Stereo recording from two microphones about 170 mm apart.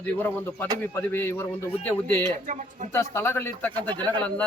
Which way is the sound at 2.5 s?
45° right (ahead or behind).